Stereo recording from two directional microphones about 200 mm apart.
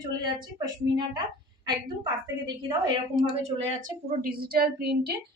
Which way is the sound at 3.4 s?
35° right (ahead or behind).